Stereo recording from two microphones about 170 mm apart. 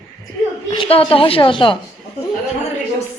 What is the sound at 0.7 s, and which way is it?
Speech, 30° left (ahead or behind).